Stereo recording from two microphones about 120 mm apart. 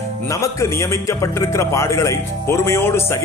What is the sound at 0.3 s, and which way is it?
A man's voice, 25° left (ahead or behind).